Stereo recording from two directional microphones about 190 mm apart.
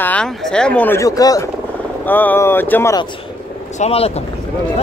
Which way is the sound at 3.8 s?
30° left (ahead or behind).